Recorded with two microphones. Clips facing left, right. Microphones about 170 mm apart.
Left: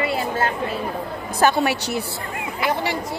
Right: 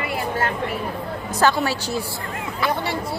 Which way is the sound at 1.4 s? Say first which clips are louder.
Left 1 dB; 15° left (ahead or behind).